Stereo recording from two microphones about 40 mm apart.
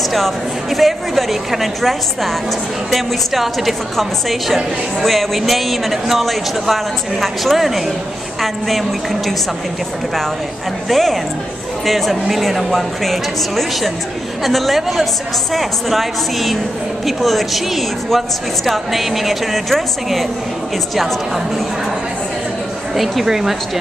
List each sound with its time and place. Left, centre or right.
0.1 s a woman's voice: centre
10.9 s a woman's voice: centre
23.2 s a woman's voice: centre